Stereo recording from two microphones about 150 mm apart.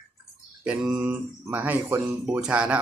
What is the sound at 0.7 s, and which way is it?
A man's voice, 10° right (ahead or behind).